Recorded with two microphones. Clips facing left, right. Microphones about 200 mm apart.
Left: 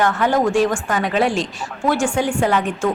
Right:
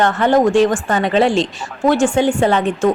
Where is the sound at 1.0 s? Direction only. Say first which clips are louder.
Right 5 dB; centre (ahead or behind).